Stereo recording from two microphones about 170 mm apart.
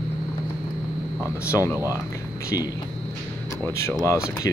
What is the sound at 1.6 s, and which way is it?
Speech, 15° right (ahead or behind).